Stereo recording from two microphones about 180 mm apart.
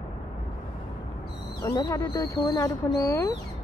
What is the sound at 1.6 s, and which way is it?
Speech, 20° left (ahead or behind).